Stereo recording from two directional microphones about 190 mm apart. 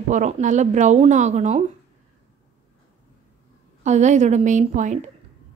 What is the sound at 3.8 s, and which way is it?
A woman's voice, 40° right (ahead or behind).